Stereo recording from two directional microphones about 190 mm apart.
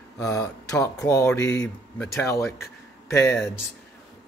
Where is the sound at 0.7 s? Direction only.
15° left (ahead or behind).